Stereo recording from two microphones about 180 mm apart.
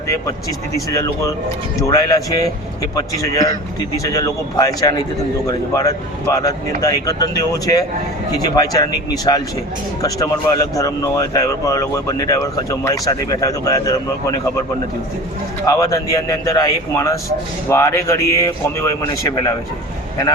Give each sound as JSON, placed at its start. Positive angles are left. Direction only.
{"t": 0.9, "sound": "speech", "side_deg": 20}
{"t": 15.6, "sound": "speech", "side_deg": 20}